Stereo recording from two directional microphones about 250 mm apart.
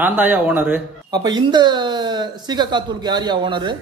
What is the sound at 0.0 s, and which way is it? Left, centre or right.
Speech, centre.